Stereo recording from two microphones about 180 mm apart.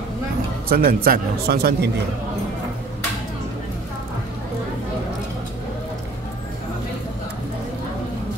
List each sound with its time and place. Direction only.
0.7 s speech: 55° right (ahead or behind)